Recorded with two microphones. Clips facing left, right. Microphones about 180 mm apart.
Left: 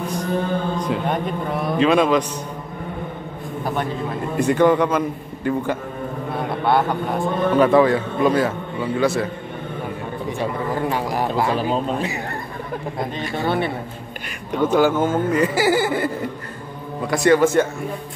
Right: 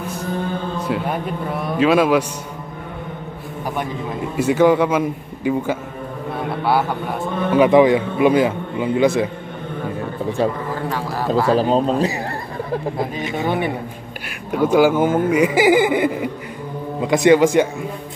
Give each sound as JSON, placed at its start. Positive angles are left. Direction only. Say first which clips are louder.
{"t": 0.7, "sound": "a man's voice", "louder": "even", "side_deg": -5}
{"t": 3.6, "sound": "a man's voice", "louder": "even", "side_deg": -10}
{"t": 10.9, "sound": "a man's voice", "louder": "even", "side_deg": 15}
{"t": 11.5, "sound": "speech", "louder": "right 5 dB", "side_deg": -35}
{"t": 13.2, "sound": "a man's voice", "louder": "even", "side_deg": -20}